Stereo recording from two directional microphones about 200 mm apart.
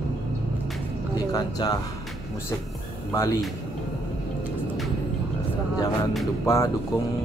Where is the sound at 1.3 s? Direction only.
20° left (ahead or behind).